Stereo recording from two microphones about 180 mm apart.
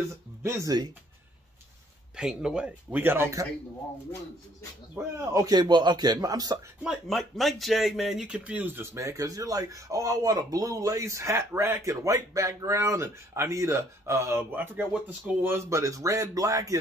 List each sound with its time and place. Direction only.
0.4 s speech: 15° right (ahead or behind)
2.1 s speech: 5° right (ahead or behind)
4.9 s a man's voice: 15° right (ahead or behind)
6.8 s speech: centre (ahead or behind); by 16.7 s 20° right (ahead or behind)